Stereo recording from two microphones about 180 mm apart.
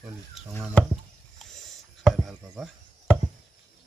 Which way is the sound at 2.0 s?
5° right (ahead or behind).